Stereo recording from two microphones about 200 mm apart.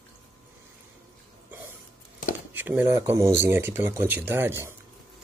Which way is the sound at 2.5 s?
10° right (ahead or behind).